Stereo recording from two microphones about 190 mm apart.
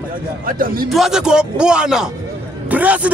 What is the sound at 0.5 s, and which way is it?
Speech, 50° right (ahead or behind).